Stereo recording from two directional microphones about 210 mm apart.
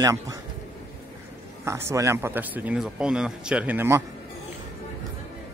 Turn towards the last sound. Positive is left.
turn(degrees=-10)  # may be behind; listen again after turning